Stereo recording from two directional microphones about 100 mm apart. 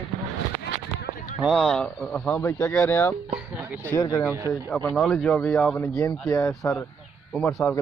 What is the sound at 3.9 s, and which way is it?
Speech, 35° left (ahead or behind).